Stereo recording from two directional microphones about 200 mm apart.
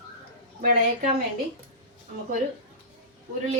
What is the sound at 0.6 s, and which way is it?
Speech, 45° right (ahead or behind).